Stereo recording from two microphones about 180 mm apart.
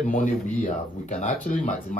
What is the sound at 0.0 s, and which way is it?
A man's voice, 45° left (ahead or behind).